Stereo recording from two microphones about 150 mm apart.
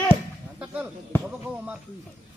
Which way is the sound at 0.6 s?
10° right (ahead or behind).